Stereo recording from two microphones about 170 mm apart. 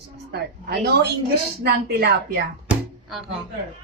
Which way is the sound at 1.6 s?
70° right (ahead or behind).